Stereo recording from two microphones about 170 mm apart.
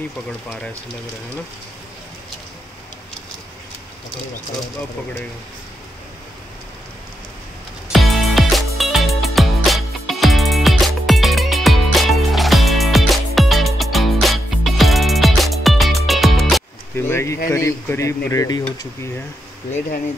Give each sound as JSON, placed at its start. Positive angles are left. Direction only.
{"t": 7.9, "sound": "music", "side_deg": 0}
{"t": 16.9, "sound": "speech", "side_deg": 15}